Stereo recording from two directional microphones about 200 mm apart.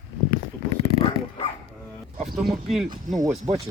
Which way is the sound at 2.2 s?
Centre (ahead or behind).